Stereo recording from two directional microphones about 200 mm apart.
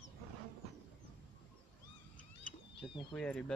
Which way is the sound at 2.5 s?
40° left (ahead or behind).